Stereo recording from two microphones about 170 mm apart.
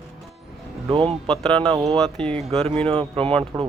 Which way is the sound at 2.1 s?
5° left (ahead or behind).